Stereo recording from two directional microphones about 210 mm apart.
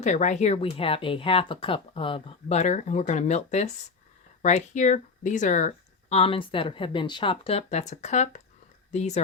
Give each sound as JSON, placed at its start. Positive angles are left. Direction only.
{"t": 0.0, "sound": "speech", "side_deg": 35}